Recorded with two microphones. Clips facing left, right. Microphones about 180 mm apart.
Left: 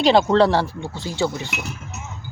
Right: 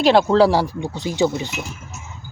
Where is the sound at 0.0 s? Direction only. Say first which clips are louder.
Right 1 dB; centre (ahead or behind); by 1.5 s 20° right (ahead or behind).